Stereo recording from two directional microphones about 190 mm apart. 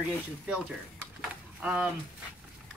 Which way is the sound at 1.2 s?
5° right (ahead or behind).